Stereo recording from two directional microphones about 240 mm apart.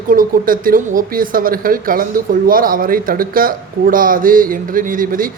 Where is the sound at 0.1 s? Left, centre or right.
Right.